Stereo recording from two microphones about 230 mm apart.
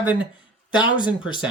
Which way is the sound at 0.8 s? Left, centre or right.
Centre.